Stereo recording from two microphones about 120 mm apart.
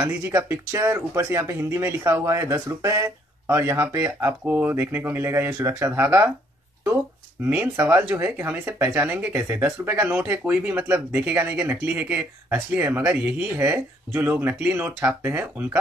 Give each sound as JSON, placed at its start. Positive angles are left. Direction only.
{"t": 0.2, "sound": "speech", "side_deg": -25}
{"t": 7.4, "sound": "speech", "side_deg": -15}